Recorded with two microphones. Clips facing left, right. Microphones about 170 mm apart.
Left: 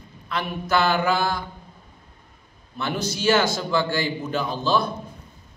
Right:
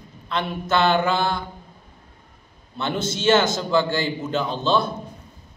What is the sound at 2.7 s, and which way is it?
A man's voice, 25° right (ahead or behind).